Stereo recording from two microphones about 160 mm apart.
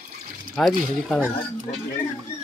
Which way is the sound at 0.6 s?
5° left (ahead or behind).